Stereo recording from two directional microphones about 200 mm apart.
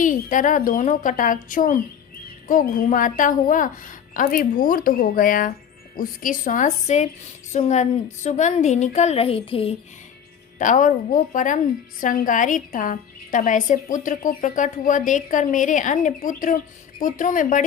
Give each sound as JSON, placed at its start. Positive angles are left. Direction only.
{"t": 0.0, "sound": "a woman's voice", "side_deg": 40}
{"t": 10.6, "sound": "a woman's voice", "side_deg": 40}